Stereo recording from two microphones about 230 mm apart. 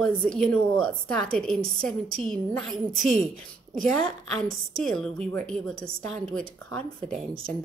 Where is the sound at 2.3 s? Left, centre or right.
Centre.